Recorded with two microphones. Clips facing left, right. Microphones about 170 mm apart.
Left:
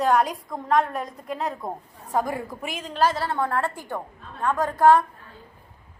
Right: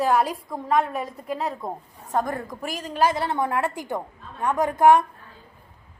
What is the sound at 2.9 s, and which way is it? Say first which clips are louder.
Speech: right 1 dB; 15° right (ahead or behind).